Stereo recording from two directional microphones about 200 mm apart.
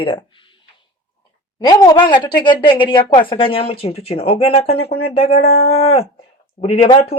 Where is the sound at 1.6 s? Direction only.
20° left (ahead or behind).